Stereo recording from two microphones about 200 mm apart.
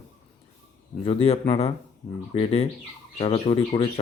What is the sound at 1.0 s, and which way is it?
Speech, 30° left (ahead or behind).